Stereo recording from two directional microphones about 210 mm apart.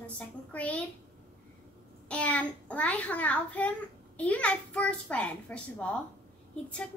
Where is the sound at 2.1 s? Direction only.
5° left (ahead or behind).